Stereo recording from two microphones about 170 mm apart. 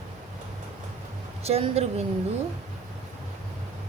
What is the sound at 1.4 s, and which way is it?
Speech, 35° right (ahead or behind).